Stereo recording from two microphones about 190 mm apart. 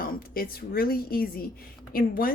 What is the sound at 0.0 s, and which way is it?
A woman's voice, 50° left (ahead or behind).